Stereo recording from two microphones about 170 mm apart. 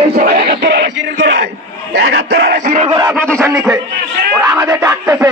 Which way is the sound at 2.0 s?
80° right.